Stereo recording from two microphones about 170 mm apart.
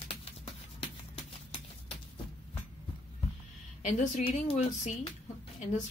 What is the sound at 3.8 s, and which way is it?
Speech, 45° left (ahead or behind).